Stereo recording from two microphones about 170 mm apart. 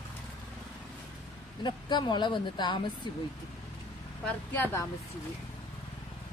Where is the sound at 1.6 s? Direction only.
25° left (ahead or behind).